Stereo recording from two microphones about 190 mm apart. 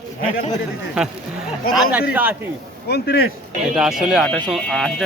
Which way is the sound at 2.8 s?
60° left (ahead or behind).